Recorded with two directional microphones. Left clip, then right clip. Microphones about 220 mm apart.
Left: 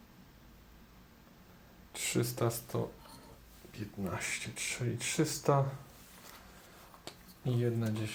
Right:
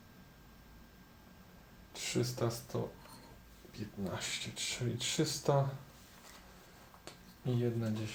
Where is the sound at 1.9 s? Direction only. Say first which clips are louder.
Left 2 dB; 40° left (ahead or behind).